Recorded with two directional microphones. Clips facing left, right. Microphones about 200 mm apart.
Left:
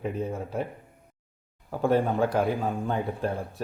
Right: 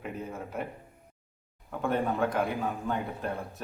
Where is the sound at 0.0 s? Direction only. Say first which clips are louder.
Left 7 dB; 30° left (ahead or behind).